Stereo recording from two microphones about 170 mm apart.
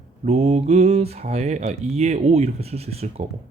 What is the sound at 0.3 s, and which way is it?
Speech, 40° right (ahead or behind).